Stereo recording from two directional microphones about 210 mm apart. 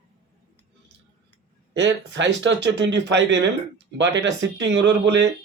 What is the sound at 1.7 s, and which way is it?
Speech, 60° right (ahead or behind).